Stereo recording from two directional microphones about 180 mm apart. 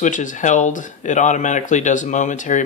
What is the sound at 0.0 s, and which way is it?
Speech, 45° left (ahead or behind).